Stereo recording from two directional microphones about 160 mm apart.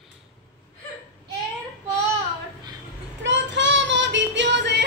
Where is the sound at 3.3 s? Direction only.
90° right.